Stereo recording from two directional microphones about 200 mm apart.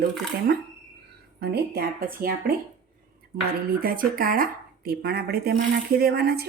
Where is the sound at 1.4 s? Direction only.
50° right (ahead or behind).